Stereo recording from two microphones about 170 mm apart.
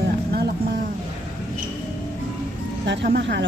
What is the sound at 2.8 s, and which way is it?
Speech, 85° right.